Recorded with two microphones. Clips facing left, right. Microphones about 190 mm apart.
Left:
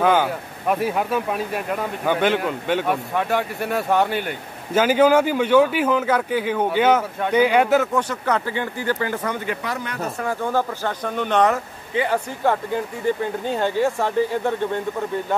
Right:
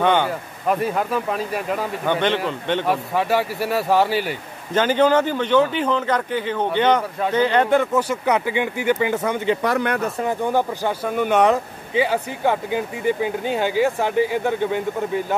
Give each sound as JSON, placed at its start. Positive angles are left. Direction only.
{"t": 0.0, "sound": "speech", "side_deg": 5}
{"t": 4.7, "sound": "speech", "side_deg": 10}
{"t": 8.1, "sound": "speech", "side_deg": -15}
{"t": 9.6, "sound": "speech", "side_deg": -60}
{"t": 10.2, "sound": "speech", "side_deg": -15}